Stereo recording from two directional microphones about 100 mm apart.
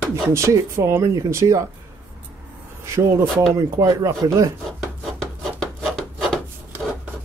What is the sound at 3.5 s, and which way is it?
Speech, 35° right (ahead or behind).